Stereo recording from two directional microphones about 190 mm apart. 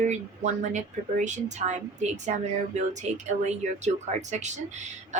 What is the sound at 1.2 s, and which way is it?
Speech, 40° right (ahead or behind).